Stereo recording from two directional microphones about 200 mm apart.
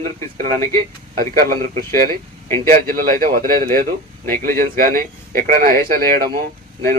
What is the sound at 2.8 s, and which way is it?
Speech, 45° right (ahead or behind).